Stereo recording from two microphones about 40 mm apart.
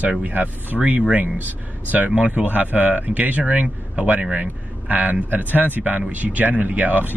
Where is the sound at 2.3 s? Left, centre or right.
Right.